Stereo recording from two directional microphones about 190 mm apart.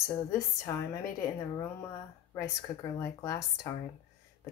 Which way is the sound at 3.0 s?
15° left (ahead or behind).